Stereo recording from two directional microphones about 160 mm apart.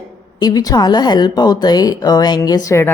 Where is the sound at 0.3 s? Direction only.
25° left (ahead or behind).